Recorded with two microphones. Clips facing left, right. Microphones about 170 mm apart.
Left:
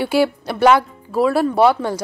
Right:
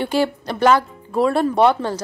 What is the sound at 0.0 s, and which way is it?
A woman's voice, 10° left (ahead or behind).